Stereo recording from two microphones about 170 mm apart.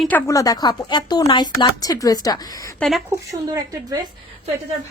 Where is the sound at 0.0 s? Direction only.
10° left (ahead or behind).